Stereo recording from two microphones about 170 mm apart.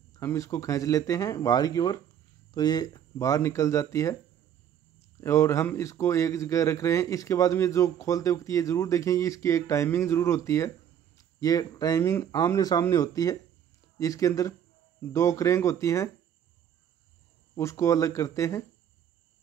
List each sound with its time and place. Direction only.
0.1 s speech: 15° left (ahead or behind)
5.2 s speech: 15° left (ahead or behind)
17.6 s speech: 15° left (ahead or behind)